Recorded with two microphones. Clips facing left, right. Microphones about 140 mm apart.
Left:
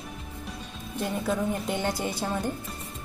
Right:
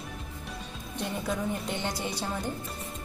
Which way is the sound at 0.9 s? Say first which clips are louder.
Left 4 dB; centre (ahead or behind).